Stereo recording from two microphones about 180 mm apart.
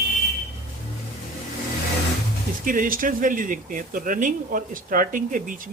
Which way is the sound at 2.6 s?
50° right (ahead or behind).